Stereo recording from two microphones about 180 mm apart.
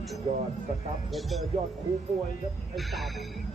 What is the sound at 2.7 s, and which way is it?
Speech, centre (ahead or behind).